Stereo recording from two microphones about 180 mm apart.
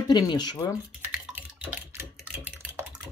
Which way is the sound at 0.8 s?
5° right (ahead or behind).